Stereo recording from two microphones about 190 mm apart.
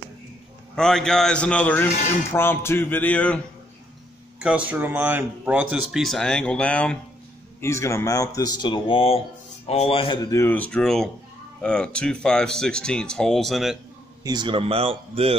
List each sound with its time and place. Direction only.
0.7 s speech: 5° left (ahead or behind)
2.3 s music: 10° left (ahead or behind)
4.4 s speech: 5° right (ahead or behind); by 10.4 s 25° left (ahead or behind)
10.4 s speech: 10° left (ahead or behind)
14.2 s speech: 25° right (ahead or behind)